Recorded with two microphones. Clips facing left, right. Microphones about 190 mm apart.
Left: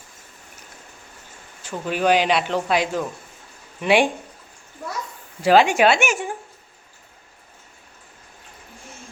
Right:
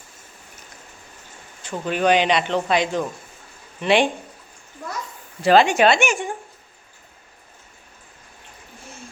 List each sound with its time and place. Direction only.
1.6 s a man's voice: 5° left (ahead or behind)
5.4 s speech: 10° left (ahead or behind)